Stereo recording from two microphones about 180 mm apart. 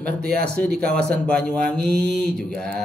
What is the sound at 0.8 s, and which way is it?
Speech, 5° left (ahead or behind).